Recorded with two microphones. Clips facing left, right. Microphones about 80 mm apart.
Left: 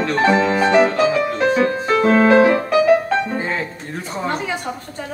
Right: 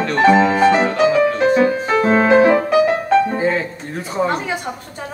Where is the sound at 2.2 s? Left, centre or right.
Centre.